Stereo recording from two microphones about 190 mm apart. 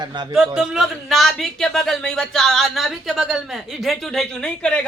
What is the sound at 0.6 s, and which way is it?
Speech, centre (ahead or behind).